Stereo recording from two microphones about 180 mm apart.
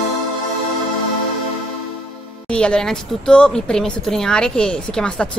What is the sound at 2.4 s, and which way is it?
A woman's voice, 5° left (ahead or behind).